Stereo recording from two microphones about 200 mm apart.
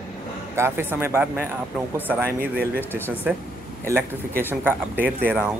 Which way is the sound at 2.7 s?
10° left (ahead or behind).